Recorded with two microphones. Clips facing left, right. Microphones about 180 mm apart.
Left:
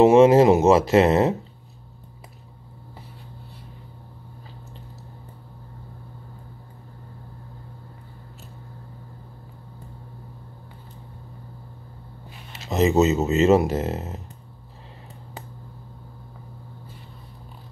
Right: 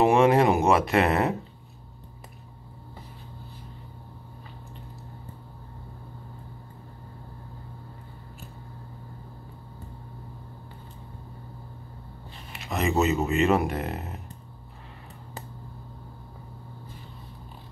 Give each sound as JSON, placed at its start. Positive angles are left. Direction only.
{"t": 0.0, "sound": "speech", "side_deg": 25}
{"t": 12.6, "sound": "speech", "side_deg": 25}